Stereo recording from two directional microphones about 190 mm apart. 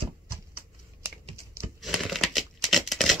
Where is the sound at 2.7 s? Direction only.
Centre (ahead or behind).